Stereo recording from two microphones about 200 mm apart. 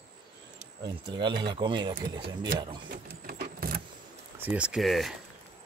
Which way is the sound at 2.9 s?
50° right (ahead or behind).